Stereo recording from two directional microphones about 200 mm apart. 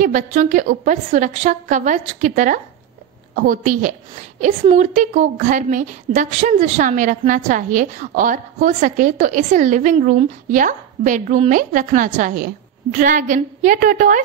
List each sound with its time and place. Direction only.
0.0 s a woman's voice: 40° right (ahead or behind)